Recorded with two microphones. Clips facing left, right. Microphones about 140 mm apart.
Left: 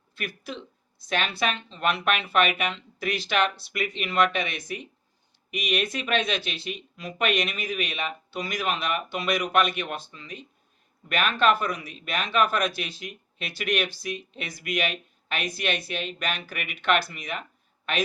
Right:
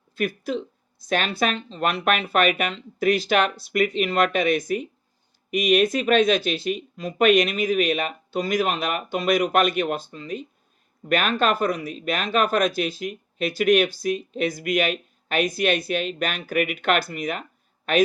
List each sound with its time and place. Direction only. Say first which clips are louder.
0.2 s speech: right 10 dB; 45° right (ahead or behind)